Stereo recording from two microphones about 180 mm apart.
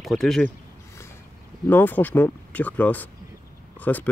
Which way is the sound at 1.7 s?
10° left (ahead or behind).